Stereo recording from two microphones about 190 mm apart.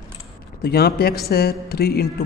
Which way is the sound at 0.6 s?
55° left (ahead or behind).